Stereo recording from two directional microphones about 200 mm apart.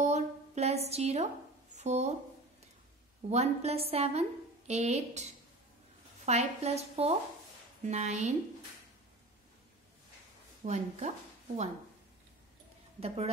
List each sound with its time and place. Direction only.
0.0 s a sound: 35° right (ahead or behind)
1.8 s speech: 35° right (ahead or behind)
3.3 s a woman's voice: 30° right (ahead or behind)
10.6 s a woman's voice: 35° right (ahead or behind)
13.0 s a woman's voice: 30° right (ahead or behind)